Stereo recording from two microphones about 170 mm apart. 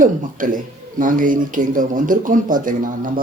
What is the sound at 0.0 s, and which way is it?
Speech, 50° right (ahead or behind).